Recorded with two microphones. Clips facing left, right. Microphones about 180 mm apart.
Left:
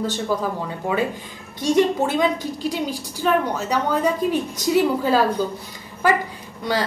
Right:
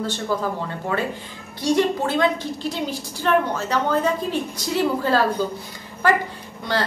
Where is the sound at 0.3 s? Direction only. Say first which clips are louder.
Even; 10° left (ahead or behind).